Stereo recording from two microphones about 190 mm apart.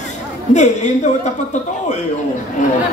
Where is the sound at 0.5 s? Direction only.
40° left (ahead or behind).